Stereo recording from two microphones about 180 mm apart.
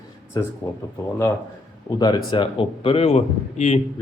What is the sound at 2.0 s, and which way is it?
Speech, 25° left (ahead or behind).